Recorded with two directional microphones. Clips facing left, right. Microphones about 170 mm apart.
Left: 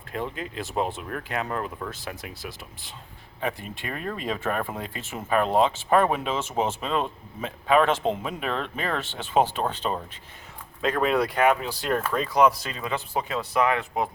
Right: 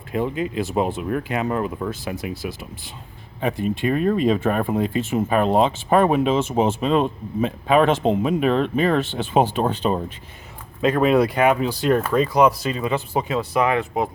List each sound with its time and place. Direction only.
0.1 s speech: 10° right (ahead or behind)
3.4 s speech: 20° right (ahead or behind)